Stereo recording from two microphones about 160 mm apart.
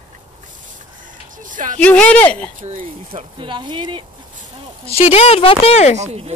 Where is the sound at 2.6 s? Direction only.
55° right (ahead or behind).